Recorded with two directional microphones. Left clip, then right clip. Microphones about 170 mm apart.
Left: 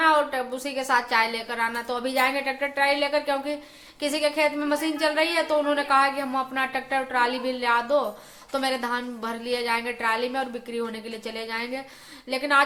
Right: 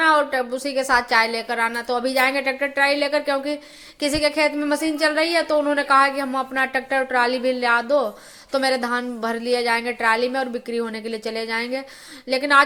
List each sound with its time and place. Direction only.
0.0 s a woman's voice: 25° right (ahead or behind)